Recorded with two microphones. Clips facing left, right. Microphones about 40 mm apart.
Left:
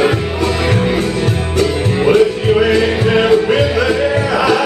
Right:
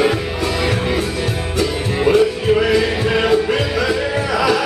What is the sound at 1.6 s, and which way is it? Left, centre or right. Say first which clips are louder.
Music: left 4 dB; centre.